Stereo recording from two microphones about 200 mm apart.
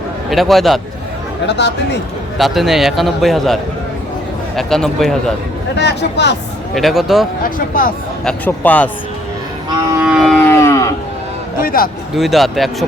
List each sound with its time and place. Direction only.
0.3 s a man's voice: centre (ahead or behind)
1.5 s speech: 60° left (ahead or behind)
2.4 s a man's voice: centre (ahead or behind)
5.7 s speech: 60° left (ahead or behind)
6.7 s a man's voice: centre (ahead or behind)
7.7 s speech: 45° left (ahead or behind)
8.2 s a man's voice: 5° left (ahead or behind)
10.0 s cattle: 5° right (ahead or behind); by 10.8 s 15° left (ahead or behind)
11.6 s speech: 45° left (ahead or behind)
12.1 s a man's voice: centre (ahead or behind)